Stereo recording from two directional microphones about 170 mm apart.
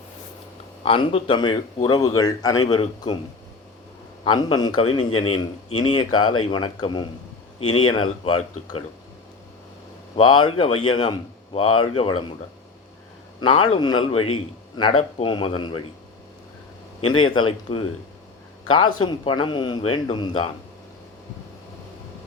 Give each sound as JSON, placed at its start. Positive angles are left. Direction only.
{"t": 0.9, "sound": "speech", "side_deg": 30}
{"t": 4.2, "sound": "a man's voice", "side_deg": 30}
{"t": 10.2, "sound": "a man's voice", "side_deg": 30}
{"t": 13.4, "sound": "a man's voice", "side_deg": 30}
{"t": 17.2, "sound": "speech", "side_deg": 30}